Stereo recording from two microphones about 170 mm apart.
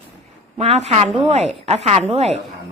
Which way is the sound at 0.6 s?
40° right (ahead or behind).